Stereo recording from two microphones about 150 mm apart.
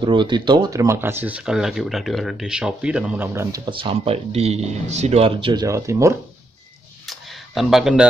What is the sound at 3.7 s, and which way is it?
Speech, 35° right (ahead or behind).